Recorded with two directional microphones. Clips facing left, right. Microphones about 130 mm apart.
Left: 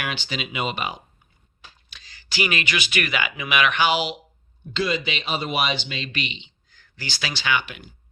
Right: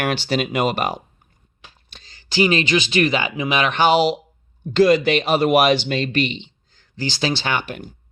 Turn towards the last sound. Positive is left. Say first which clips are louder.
# right 2 dB
turn(degrees=-40)  # may be behind; listen again after turning